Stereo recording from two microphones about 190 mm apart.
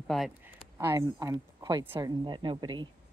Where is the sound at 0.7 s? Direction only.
15° right (ahead or behind).